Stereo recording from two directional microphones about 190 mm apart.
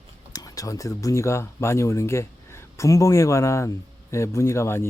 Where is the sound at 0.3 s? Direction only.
20° left (ahead or behind).